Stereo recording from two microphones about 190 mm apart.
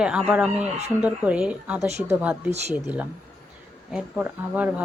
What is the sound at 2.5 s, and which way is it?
Speech, 35° right (ahead or behind).